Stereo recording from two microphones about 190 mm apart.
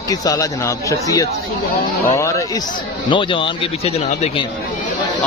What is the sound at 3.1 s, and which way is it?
Speech, 25° left (ahead or behind).